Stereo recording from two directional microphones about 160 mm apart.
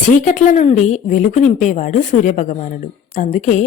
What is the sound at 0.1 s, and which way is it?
Speech, 50° left (ahead or behind).